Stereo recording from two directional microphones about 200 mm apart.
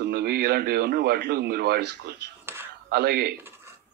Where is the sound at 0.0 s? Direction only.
50° right (ahead or behind).